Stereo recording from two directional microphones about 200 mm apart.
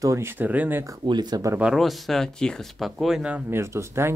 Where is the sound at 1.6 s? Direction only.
Centre (ahead or behind).